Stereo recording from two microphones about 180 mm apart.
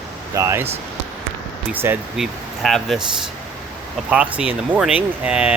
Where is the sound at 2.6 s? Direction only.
Centre (ahead or behind).